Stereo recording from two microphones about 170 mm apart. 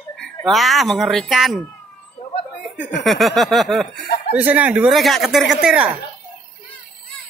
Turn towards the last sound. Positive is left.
turn(degrees=-5)  # may be behind; listen again after turning